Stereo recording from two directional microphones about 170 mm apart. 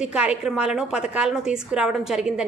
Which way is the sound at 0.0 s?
5° right (ahead or behind).